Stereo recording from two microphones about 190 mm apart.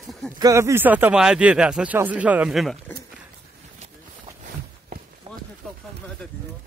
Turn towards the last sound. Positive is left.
turn(degrees=-40)  # may be behind; listen again after turning